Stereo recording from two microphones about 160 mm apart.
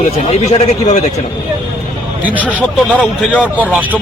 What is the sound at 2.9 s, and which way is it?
Speech, 10° left (ahead or behind).